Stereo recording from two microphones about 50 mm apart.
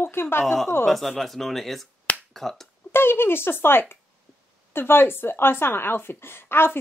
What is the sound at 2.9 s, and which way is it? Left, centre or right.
Speech, left.